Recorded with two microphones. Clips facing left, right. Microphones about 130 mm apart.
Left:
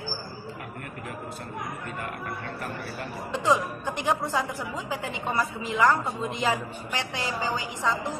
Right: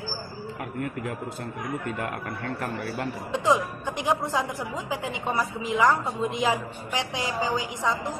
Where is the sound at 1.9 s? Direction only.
85° right.